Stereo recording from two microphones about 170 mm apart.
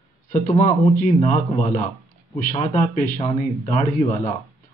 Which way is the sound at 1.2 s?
45° left (ahead or behind).